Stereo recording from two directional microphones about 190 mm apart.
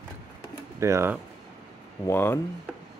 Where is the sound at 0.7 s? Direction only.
15° right (ahead or behind).